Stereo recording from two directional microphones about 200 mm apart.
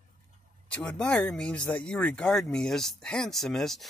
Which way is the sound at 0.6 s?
5° left (ahead or behind).